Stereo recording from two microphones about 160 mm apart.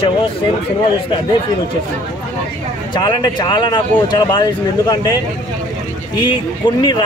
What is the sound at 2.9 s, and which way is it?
Speech, 30° left (ahead or behind).